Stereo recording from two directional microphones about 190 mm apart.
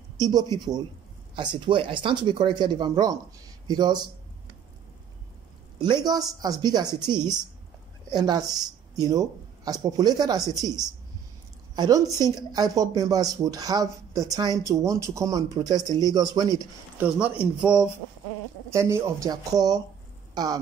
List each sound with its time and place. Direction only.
0.2 s speech: 20° right (ahead or behind)
5.8 s speech: 20° right (ahead or behind)
17.0 s speech: 5° right (ahead or behind)